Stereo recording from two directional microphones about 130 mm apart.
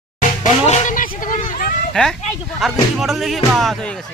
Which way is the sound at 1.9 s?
5° left (ahead or behind).